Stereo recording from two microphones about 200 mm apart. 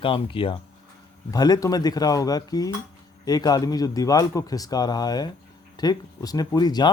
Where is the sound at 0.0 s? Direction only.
25° left (ahead or behind).